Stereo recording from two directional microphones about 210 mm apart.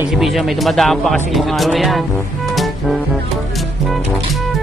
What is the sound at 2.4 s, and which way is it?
Music, centre (ahead or behind).